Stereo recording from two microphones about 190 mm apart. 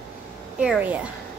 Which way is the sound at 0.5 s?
5° right (ahead or behind).